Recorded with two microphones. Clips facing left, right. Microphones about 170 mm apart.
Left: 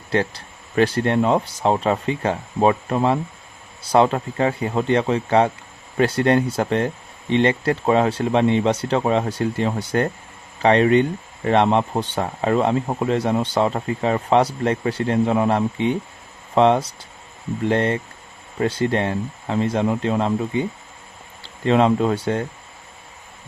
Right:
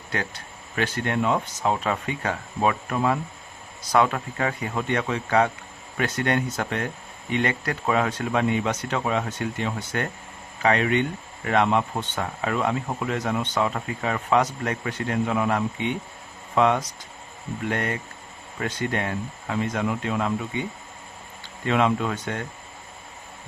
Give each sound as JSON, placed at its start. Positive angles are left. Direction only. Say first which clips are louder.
{"t": 0.1, "sound": "speech", "louder": "left 9 dB", "side_deg": 30}